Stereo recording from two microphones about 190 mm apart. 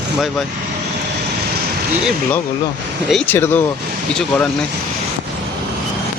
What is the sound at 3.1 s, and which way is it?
Speech, 10° left (ahead or behind).